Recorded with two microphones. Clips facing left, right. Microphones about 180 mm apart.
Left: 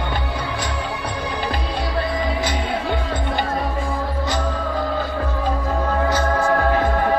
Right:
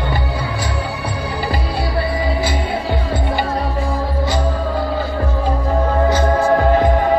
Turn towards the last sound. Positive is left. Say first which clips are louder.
# right 4 dB
turn(degrees=-15)  # may be behind; listen again after turning